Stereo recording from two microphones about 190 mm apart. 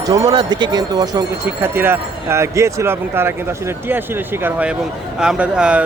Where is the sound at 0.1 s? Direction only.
20° right (ahead or behind).